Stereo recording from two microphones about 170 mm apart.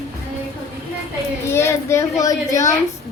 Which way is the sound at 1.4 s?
15° left (ahead or behind).